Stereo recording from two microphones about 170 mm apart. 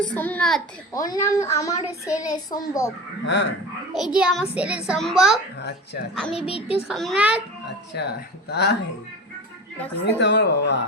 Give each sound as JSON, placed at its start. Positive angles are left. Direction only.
{"t": 0.0, "sound": "a child's voice", "side_deg": 10}
{"t": 0.9, "sound": "a child's voice", "side_deg": 20}
{"t": 3.2, "sound": "speech", "side_deg": 90}
{"t": 3.9, "sound": "a child's voice", "side_deg": -5}
{"t": 6.5, "sound": "a child's voice", "side_deg": 35}
{"t": 6.8, "sound": "a child's voice", "side_deg": 0}
{"t": 7.9, "sound": "speech", "side_deg": 75}
{"t": 10.0, "sound": "speech", "side_deg": 90}